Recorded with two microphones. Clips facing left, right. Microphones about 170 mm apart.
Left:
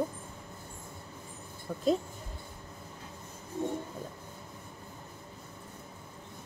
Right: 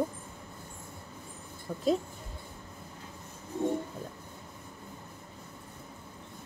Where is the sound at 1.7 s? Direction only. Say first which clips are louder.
Even; centre (ahead or behind).